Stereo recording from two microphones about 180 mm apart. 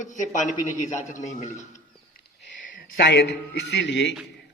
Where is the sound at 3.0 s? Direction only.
70° left (ahead or behind).